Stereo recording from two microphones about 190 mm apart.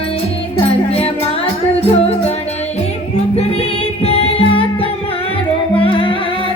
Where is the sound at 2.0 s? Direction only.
30° left (ahead or behind).